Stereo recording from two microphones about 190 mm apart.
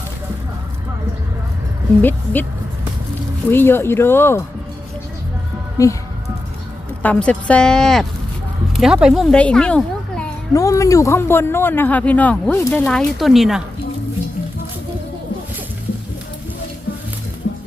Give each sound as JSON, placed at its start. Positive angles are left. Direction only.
{"t": 2.0, "sound": "speech", "side_deg": 10}
{"t": 3.5, "sound": "speech", "side_deg": 10}
{"t": 5.7, "sound": "speech", "side_deg": 15}
{"t": 7.0, "sound": "speech", "side_deg": 5}
{"t": 10.5, "sound": "speech", "side_deg": 15}
{"t": 17.5, "sound": "music", "side_deg": 70}